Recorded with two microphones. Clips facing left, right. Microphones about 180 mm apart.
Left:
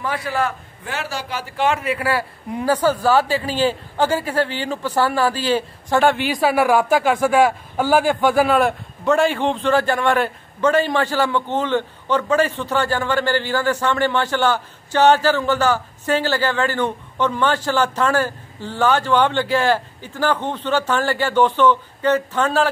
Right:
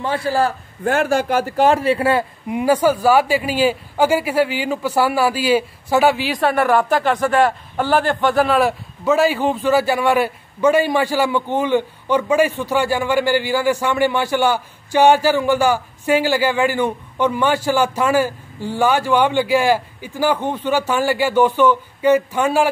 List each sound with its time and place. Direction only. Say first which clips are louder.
0.0 s a man's voice: right 4 dB; 30° right (ahead or behind)
0.8 s a man's voice: right 11 dB; 50° right (ahead or behind); by 2.2 s 25° right (ahead or behind)
2.5 s a man's voice: right 3 dB; 10° right (ahead or behind)